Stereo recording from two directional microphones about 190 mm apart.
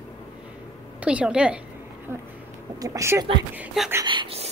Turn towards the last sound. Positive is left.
turn(degrees=-25)  # may be behind; listen again after turning